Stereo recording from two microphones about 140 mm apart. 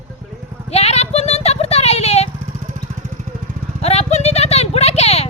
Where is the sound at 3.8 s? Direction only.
50° left (ahead or behind).